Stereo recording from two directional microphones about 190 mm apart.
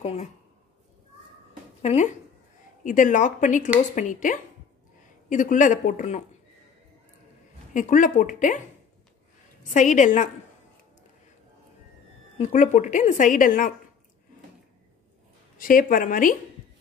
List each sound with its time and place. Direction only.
0.0 s speech: 35° left (ahead or behind)
1.8 s speech: 35° left (ahead or behind)
7.7 s speech: 45° left (ahead or behind)
9.6 s speech: 40° left (ahead or behind)
12.4 s speech: 40° left (ahead or behind)
15.5 s speech: 45° left (ahead or behind)